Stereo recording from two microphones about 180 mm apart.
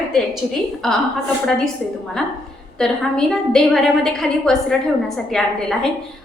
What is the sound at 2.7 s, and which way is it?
A woman's voice, 5° left (ahead or behind).